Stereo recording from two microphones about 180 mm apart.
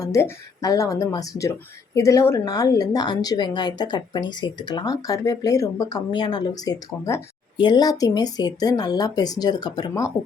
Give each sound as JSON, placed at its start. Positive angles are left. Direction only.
{"t": 0.0, "sound": "a woman's voice", "side_deg": 20}